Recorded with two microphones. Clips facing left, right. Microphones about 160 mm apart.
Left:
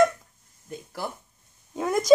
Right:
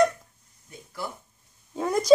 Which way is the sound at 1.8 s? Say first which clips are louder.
Even; centre (ahead or behind).